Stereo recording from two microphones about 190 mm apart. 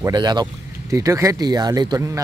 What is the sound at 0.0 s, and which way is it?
A man's voice, 20° right (ahead or behind).